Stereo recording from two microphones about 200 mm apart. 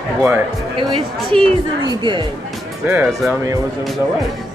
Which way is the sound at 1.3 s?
25° right (ahead or behind).